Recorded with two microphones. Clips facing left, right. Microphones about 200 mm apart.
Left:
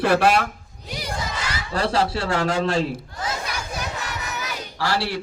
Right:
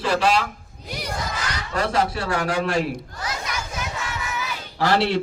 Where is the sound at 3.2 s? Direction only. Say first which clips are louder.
Left 1 dB; 30° left (ahead or behind).